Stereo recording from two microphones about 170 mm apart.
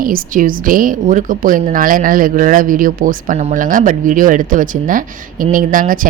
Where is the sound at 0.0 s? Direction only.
55° right (ahead or behind).